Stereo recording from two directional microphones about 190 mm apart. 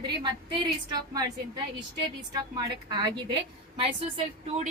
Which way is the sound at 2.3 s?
20° right (ahead or behind).